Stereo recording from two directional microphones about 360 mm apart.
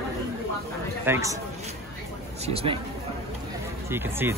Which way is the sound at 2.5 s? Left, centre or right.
Centre.